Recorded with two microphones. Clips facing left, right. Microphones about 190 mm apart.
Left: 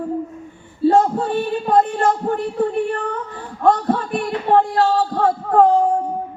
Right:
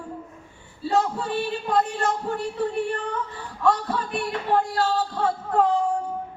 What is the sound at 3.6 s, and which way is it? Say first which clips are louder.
Speech: left 6 dB; 55° left (ahead or behind).